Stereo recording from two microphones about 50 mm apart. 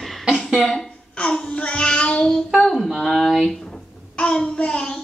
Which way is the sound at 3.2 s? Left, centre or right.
Centre.